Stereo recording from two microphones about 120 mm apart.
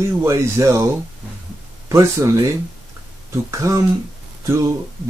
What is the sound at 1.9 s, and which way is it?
Speech, 25° right (ahead or behind).